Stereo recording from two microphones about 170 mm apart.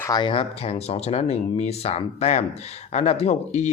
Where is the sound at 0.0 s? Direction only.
25° left (ahead or behind).